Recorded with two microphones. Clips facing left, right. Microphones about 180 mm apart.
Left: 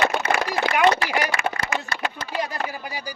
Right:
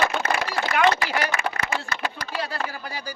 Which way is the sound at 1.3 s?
30° left (ahead or behind).